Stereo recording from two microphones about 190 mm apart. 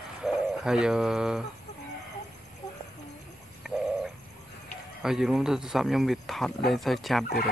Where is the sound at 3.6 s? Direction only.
Centre (ahead or behind).